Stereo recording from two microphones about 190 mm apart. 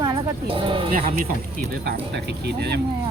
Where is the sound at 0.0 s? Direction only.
25° right (ahead or behind).